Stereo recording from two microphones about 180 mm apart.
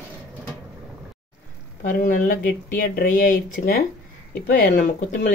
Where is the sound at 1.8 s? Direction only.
50° left (ahead or behind).